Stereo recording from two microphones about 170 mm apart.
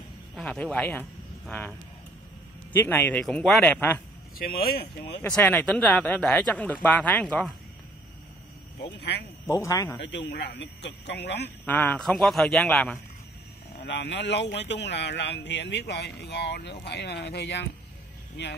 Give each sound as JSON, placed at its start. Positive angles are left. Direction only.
{"t": 0.4, "sound": "speech", "side_deg": 5}
{"t": 4.4, "sound": "speech", "side_deg": 65}
{"t": 5.2, "sound": "speech", "side_deg": 10}
{"t": 8.9, "sound": "a man's voice", "side_deg": 80}
{"t": 9.5, "sound": "speech", "side_deg": 20}
{"t": 9.9, "sound": "speech", "side_deg": 90}
{"t": 11.6, "sound": "a man's voice", "side_deg": 10}
{"t": 13.8, "sound": "a man's voice", "side_deg": 90}